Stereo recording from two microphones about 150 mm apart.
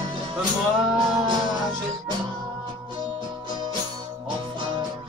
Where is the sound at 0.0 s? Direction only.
35° right (ahead or behind).